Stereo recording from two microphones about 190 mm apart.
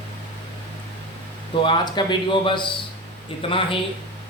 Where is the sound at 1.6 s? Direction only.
25° left (ahead or behind).